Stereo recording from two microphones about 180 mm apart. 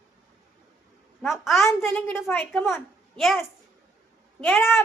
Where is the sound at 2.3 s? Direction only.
10° left (ahead or behind).